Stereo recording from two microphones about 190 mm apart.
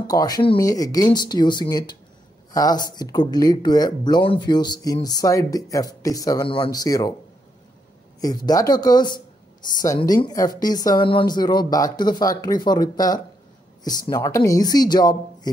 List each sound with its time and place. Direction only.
0.0 s speech: 20° left (ahead or behind)
8.2 s speech: 20° left (ahead or behind)